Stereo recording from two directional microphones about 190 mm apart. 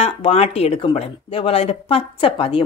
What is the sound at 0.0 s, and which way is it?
Speech, 35° left (ahead or behind).